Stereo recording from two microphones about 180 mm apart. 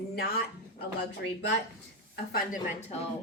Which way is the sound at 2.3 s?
50° left (ahead or behind).